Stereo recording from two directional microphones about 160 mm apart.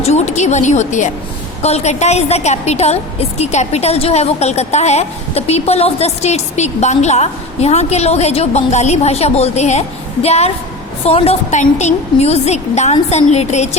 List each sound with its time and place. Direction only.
0.0 s a woman's voice: 45° left (ahead or behind)